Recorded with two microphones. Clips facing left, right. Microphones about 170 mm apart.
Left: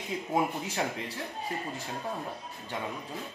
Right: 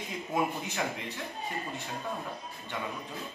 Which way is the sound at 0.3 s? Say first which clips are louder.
Left 1 dB; 30° left (ahead or behind).